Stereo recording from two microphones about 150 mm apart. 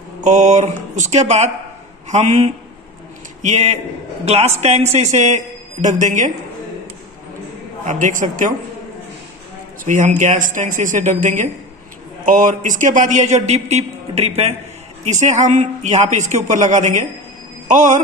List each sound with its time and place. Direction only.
0.2 s a man's voice: 50° right (ahead or behind)
7.8 s a man's voice: 55° right (ahead or behind)
9.8 s a man's voice: 60° right (ahead or behind)